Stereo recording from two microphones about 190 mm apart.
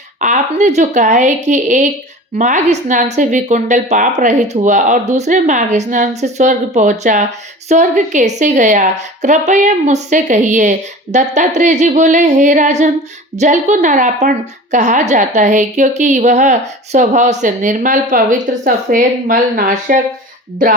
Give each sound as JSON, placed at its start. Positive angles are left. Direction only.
{"t": 0.2, "sound": "speech", "side_deg": -40}